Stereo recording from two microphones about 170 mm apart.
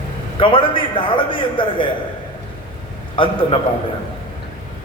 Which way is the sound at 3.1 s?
30° left (ahead or behind).